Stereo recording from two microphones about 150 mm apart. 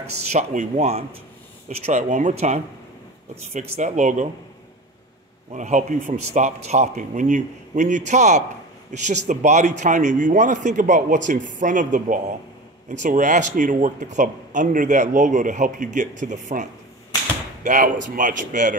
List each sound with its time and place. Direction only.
0.0 s a man's voice: 45° right (ahead or behind)
3.7 s a man's voice: 50° right (ahead or behind)
5.5 s a man's voice: 55° right (ahead or behind)
17.6 s speech: 60° right (ahead or behind)